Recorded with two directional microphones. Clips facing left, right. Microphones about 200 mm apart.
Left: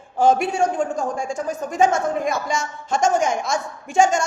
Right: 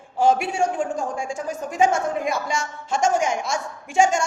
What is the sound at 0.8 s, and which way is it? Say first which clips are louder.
Speech: left 2 dB; 40° left (ahead or behind).